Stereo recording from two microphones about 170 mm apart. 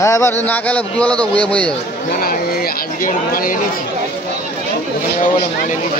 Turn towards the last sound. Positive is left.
turn(degrees=55)  # may be behind; listen again after turning